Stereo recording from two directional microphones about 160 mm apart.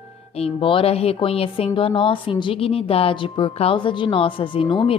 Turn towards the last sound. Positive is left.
turn(degrees=35)  # may be behind; listen again after turning